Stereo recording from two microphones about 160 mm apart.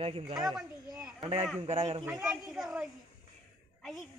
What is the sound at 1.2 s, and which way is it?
Speech, 40° right (ahead or behind).